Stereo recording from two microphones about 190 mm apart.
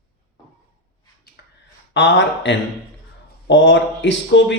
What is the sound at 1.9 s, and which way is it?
Speech, 75° left (ahead or behind).